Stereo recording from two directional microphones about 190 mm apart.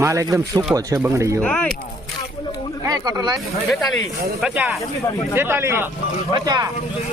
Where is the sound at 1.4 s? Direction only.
5° left (ahead or behind).